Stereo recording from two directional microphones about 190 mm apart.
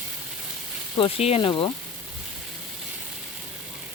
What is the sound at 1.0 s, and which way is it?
Speech, 30° left (ahead or behind).